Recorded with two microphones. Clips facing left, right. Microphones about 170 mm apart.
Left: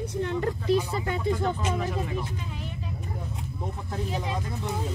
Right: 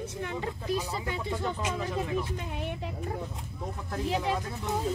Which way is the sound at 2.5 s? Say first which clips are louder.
Right 3 dB; 60° right (ahead or behind).